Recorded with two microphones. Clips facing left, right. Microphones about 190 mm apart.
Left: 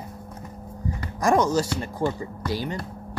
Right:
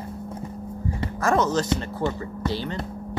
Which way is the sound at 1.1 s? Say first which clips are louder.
Left 2 dB; 15° left (ahead or behind).